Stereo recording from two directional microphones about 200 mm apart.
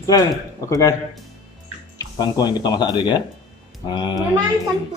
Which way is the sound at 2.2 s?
20° left (ahead or behind).